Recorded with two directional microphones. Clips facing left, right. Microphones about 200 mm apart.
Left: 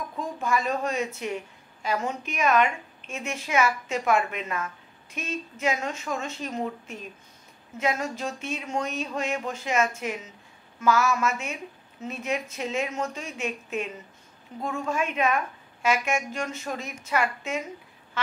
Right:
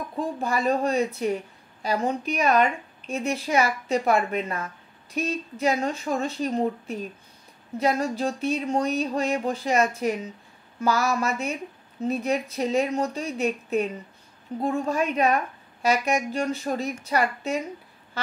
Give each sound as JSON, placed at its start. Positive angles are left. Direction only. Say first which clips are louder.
{"t": 0.1, "sound": "speech", "louder": "right 1 dB", "side_deg": -35}
{"t": 18.2, "sound": "duck", "louder": "even", "side_deg": -35}